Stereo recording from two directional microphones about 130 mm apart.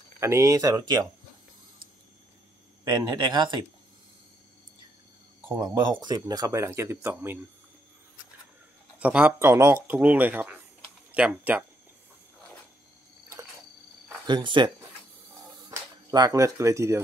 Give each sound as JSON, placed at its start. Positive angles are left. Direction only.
{"t": 0.2, "sound": "speech", "side_deg": -25}
{"t": 2.8, "sound": "speech", "side_deg": -30}
{"t": 5.6, "sound": "speech", "side_deg": -35}
{"t": 9.0, "sound": "speech", "side_deg": -10}
{"t": 14.2, "sound": "speech", "side_deg": -35}
{"t": 16.1, "sound": "speech", "side_deg": -30}